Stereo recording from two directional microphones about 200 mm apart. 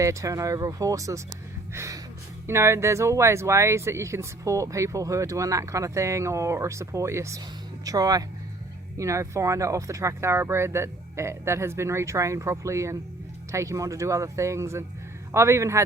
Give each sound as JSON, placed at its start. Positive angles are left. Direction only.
{"t": 0.0, "sound": "speech", "side_deg": -15}